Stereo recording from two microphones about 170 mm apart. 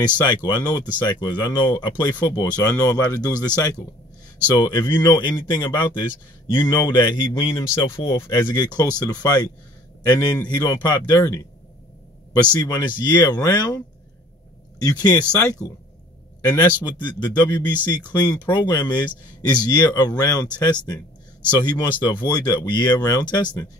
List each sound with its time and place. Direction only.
0.2 s speech: 25° left (ahead or behind)
12.5 s speech: 25° left (ahead or behind)
14.8 s speech: 25° left (ahead or behind)
21.5 s speech: 25° left (ahead or behind)